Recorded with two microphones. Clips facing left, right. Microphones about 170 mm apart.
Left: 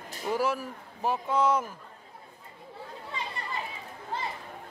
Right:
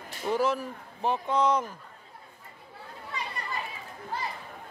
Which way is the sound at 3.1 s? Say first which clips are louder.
Right 1 dB; 25° left (ahead or behind).